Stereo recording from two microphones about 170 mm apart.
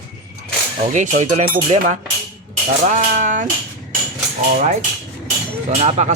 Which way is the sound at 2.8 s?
50° right (ahead or behind).